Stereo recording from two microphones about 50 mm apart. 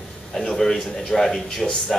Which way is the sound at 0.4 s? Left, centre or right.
Centre.